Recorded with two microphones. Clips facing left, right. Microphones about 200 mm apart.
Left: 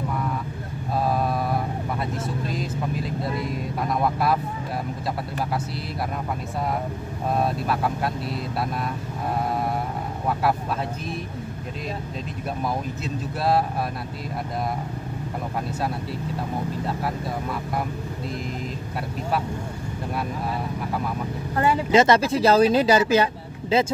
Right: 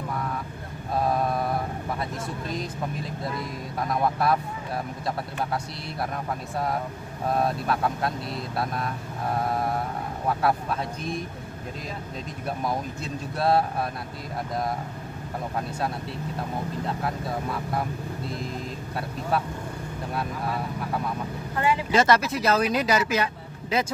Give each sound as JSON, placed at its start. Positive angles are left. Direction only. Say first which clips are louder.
{"t": 3.9, "sound": "speech", "louder": "left 1 dB", "side_deg": 0}
{"t": 7.6, "sound": "speech", "louder": "left 1 dB", "side_deg": 5}
{"t": 12.6, "sound": "speech", "louder": "left 2 dB", "side_deg": 0}
{"t": 21.9, "sound": "speech", "louder": "left 5 dB", "side_deg": 25}